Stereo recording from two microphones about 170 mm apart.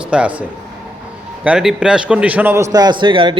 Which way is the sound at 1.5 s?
5° right (ahead or behind).